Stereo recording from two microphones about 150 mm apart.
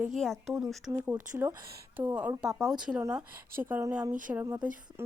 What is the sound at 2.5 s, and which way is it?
Speech, centre (ahead or behind).